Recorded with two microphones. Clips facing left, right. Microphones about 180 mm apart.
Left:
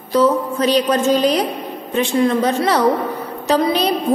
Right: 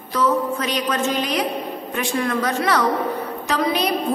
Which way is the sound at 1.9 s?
25° left (ahead or behind).